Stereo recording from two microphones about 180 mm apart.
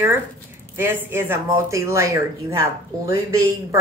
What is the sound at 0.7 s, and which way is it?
Speech, 15° right (ahead or behind).